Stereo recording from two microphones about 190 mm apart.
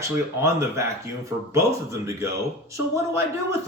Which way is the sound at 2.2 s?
15° right (ahead or behind).